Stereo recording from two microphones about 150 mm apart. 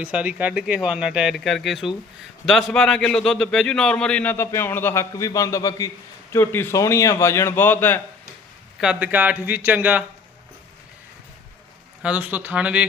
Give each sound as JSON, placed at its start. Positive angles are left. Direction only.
{"t": 0.0, "sound": "a man's voice", "side_deg": -10}
{"t": 8.8, "sound": "speech", "side_deg": -10}
{"t": 12.0, "sound": "speech", "side_deg": -10}